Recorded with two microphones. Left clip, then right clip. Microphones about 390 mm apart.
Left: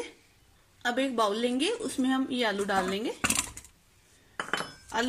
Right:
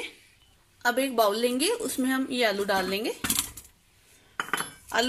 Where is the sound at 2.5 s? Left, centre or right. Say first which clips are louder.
Right 2 dB; right.